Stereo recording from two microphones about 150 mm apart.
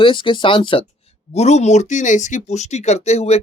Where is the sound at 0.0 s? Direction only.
35° left (ahead or behind).